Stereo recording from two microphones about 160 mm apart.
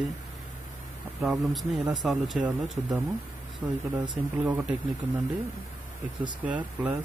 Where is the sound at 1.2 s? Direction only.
Centre (ahead or behind).